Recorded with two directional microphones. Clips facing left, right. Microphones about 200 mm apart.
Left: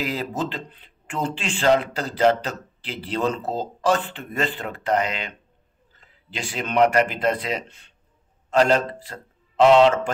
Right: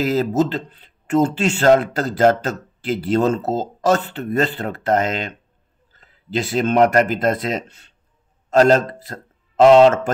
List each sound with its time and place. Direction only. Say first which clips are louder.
0.0 s a man's voice: right 9 dB; 40° right (ahead or behind)